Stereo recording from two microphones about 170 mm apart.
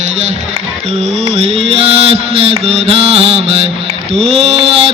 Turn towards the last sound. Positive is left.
turn(degrees=-35)  # may be behind; listen again after turning